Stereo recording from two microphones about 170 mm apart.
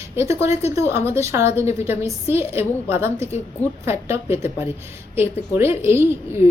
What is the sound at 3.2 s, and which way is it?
Speech, 40° left (ahead or behind).